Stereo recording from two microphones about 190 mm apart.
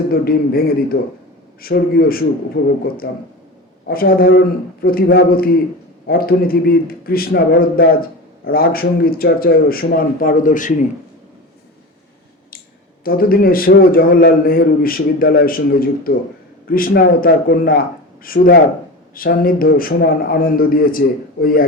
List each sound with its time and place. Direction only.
0.1 s a man's voice: 50° left (ahead or behind)
13.1 s a man's voice: 50° left (ahead or behind)